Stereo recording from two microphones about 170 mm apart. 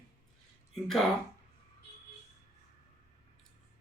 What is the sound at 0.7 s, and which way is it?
Speech, centre (ahead or behind).